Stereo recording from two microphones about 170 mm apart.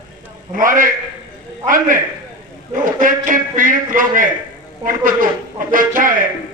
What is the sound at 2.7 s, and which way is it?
A man's voice, 50° right (ahead or behind).